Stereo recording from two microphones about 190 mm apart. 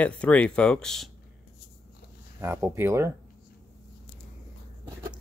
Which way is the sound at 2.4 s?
15° right (ahead or behind).